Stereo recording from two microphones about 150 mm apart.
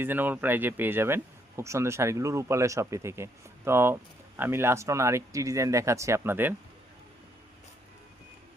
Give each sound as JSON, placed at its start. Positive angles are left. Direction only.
{"t": 0.0, "sound": "speech", "side_deg": -15}